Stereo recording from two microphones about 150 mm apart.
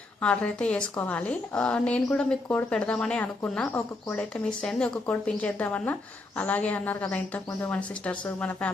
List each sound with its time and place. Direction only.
0.2 s a woman's voice: 5° left (ahead or behind)
3.7 s a woman's voice: 20° left (ahead or behind)
4.1 s a woman's voice: 5° left (ahead or behind)